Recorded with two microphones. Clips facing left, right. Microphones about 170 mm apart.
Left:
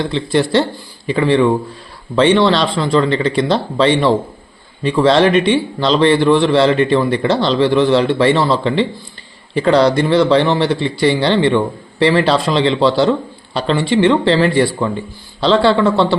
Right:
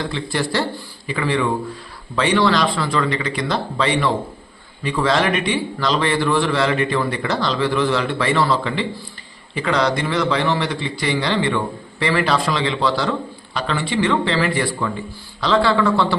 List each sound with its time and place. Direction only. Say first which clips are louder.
0.0 s a man's voice: left 7 dB; 25° left (ahead or behind)